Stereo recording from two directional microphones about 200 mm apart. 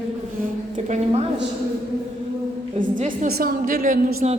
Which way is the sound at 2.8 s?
40° right (ahead or behind).